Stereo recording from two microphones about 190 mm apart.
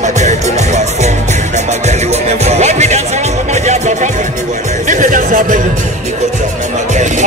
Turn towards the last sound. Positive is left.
turn(degrees=-40)  # may be behind; listen again after turning